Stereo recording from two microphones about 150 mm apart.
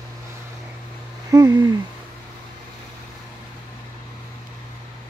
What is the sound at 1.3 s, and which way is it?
Speech, 25° right (ahead or behind).